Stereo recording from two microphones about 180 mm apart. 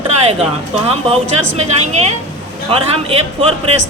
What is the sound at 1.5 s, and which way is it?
Speech, 35° right (ahead or behind).